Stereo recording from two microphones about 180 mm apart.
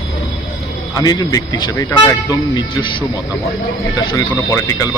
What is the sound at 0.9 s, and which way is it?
Speech, 20° left (ahead or behind).